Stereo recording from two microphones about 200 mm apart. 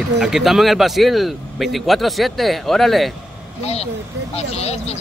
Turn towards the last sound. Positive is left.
turn(degrees=30)  # may be behind; listen again after turning